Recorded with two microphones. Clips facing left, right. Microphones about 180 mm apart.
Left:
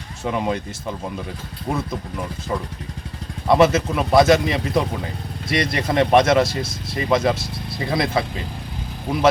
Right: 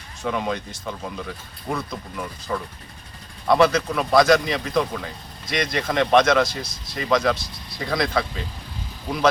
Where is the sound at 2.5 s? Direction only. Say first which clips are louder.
Left 1 dB; 25° left (ahead or behind).